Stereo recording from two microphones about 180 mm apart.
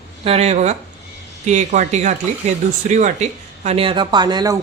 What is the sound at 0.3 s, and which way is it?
Speech, 35° right (ahead or behind).